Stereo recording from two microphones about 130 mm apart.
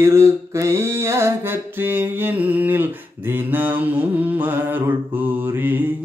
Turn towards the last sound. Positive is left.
turn(degrees=-20)  # may be behind; listen again after turning